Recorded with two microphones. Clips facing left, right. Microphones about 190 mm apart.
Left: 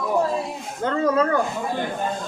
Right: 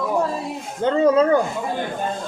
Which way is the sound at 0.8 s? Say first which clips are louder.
Right 4 dB; 25° right (ahead or behind).